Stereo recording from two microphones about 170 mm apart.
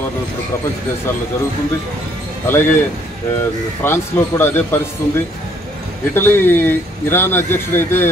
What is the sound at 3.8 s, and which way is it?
A man's voice, 15° left (ahead or behind).